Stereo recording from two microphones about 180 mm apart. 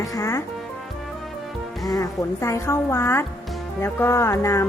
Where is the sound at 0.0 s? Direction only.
15° left (ahead or behind).